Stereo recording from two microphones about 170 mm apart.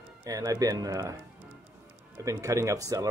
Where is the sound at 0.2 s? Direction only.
20° right (ahead or behind).